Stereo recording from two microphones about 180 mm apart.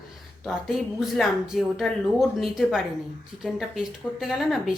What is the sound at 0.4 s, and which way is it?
Speech, centre (ahead or behind).